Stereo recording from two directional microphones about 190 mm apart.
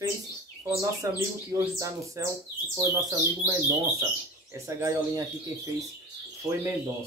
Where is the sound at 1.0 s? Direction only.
15° right (ahead or behind).